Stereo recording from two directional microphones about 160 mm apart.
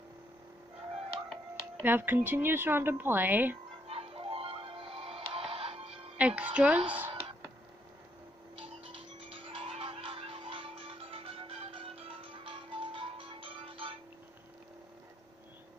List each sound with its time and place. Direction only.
1.3 s speech: 10° right (ahead or behind)
3.8 s music: 35° right (ahead or behind)
6.1 s speech: 10° right (ahead or behind)
8.5 s music: 35° right (ahead or behind)